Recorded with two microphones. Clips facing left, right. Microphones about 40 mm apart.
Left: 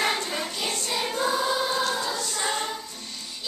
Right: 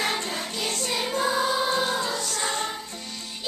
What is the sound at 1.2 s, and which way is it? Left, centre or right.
Choir, centre.